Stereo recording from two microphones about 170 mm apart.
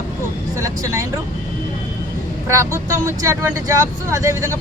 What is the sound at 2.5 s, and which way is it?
Speech, 15° right (ahead or behind).